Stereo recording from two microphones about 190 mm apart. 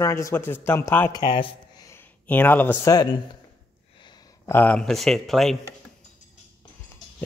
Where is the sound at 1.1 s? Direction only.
20° left (ahead or behind).